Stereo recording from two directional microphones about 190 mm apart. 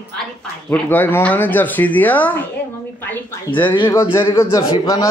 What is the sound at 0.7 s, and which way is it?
A man's voice, 10° left (ahead or behind).